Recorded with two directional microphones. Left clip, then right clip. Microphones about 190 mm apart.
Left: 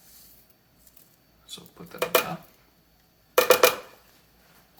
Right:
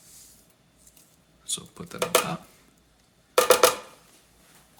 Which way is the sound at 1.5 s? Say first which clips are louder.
Right 7 dB; 55° right (ahead or behind).